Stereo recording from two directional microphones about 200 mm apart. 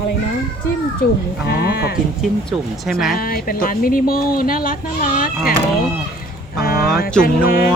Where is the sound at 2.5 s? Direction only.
Centre (ahead or behind).